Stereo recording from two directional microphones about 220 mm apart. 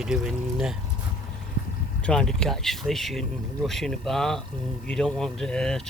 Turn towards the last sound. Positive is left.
turn(degrees=5)  # may be behind; listen again after turning